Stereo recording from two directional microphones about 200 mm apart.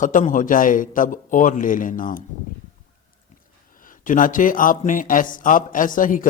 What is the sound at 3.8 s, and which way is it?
Speech, 40° left (ahead or behind).